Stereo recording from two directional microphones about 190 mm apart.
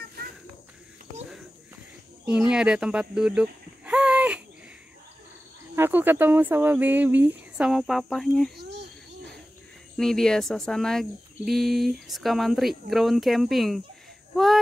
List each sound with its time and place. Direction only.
2.2 s speech: 5° right (ahead or behind)
5.8 s speech: 10° right (ahead or behind)
8.5 s a sound: 60° right (ahead or behind)
9.9 s speech: 5° left (ahead or behind)